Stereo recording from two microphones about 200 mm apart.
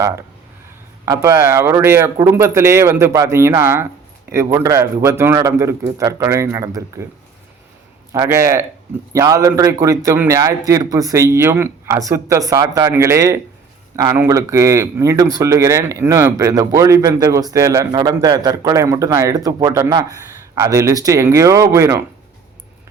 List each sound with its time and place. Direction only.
1.0 s speech: 15° right (ahead or behind)
8.1 s speech: 15° right (ahead or behind)